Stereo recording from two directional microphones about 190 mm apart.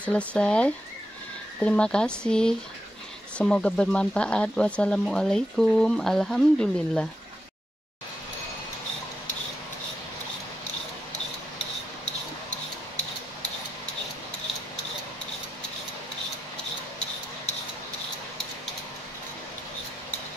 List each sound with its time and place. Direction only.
0.0 s speech: 5° left (ahead or behind)